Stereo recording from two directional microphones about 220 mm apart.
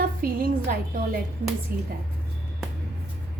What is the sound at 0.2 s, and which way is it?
Music, 40° right (ahead or behind).